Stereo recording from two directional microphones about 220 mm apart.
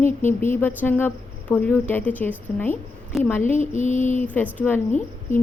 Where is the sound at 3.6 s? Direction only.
35° left (ahead or behind).